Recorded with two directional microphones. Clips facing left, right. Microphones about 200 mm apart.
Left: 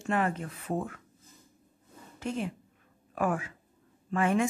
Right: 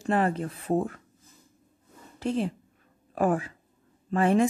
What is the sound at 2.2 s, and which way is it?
Speech, 35° right (ahead or behind).